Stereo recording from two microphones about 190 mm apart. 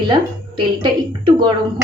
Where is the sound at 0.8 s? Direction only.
25° right (ahead or behind).